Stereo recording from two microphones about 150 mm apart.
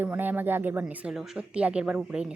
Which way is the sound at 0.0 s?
10° right (ahead or behind).